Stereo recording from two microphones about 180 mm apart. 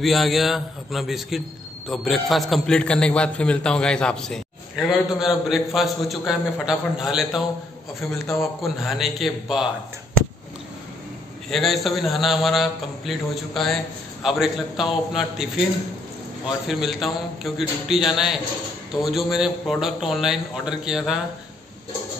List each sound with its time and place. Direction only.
0.0 s a man's voice: centre (ahead or behind)
11.5 s a man's voice: centre (ahead or behind)
16.6 s a man's voice: centre (ahead or behind)